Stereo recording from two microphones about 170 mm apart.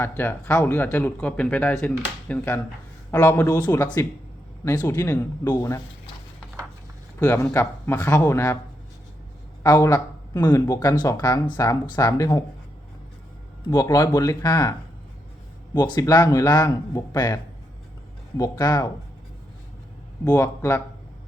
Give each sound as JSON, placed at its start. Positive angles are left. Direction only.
{"t": 0.0, "sound": "speech", "side_deg": 10}
{"t": 7.4, "sound": "speech", "side_deg": 15}
{"t": 9.6, "sound": "speech", "side_deg": 20}
{"t": 13.7, "sound": "speech", "side_deg": 20}
{"t": 15.8, "sound": "speech", "side_deg": 25}
{"t": 20.2, "sound": "speech", "side_deg": 20}